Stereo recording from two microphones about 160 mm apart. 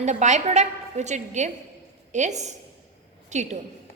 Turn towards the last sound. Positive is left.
turn(degrees=-45)  # may be behind; listen again after turning